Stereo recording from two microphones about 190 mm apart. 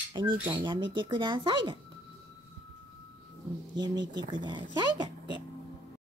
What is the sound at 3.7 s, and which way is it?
Speech, 20° right (ahead or behind).